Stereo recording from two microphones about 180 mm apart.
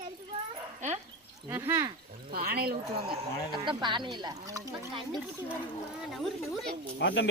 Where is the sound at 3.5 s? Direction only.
25° right (ahead or behind).